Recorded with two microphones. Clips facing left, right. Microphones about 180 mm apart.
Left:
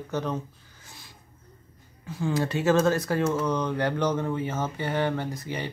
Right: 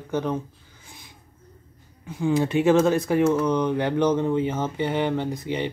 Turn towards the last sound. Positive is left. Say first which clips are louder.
# right 6 dB
turn(degrees=-20)  # may be behind; listen again after turning